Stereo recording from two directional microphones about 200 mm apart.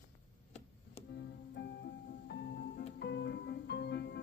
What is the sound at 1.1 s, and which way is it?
Music, 55° left (ahead or behind).